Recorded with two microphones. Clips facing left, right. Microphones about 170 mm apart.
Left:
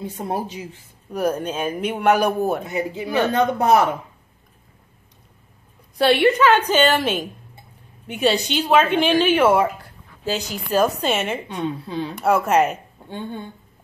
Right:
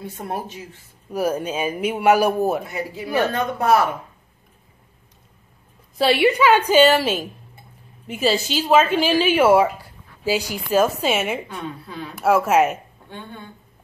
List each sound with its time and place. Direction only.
0.0 s speech: 15° left (ahead or behind)
1.1 s speech: 5° right (ahead or behind)
2.6 s a woman's voice: 20° left (ahead or behind)
5.9 s a woman's voice: 5° right (ahead or behind)
11.4 s a woman's voice: 25° left (ahead or behind)
12.2 s a woman's voice: 5° right (ahead or behind)
13.1 s a woman's voice: 30° left (ahead or behind)